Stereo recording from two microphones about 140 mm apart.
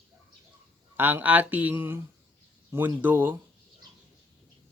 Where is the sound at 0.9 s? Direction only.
15° right (ahead or behind).